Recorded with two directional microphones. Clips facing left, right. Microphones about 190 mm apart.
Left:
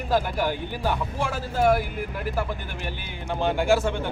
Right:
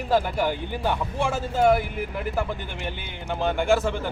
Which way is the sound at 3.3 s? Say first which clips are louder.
Even; centre (ahead or behind).